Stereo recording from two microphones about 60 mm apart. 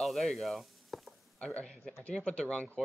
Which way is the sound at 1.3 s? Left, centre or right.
Centre.